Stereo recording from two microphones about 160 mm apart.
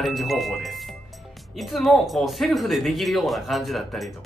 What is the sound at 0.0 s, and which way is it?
Speech, centre (ahead or behind).